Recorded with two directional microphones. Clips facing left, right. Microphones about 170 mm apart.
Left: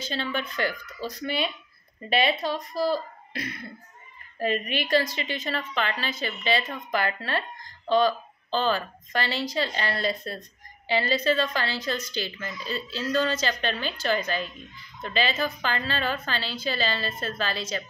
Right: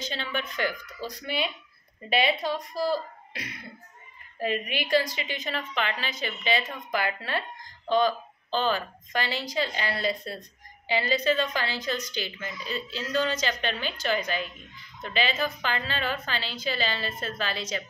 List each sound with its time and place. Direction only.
0.0 s speech: 15° right (ahead or behind)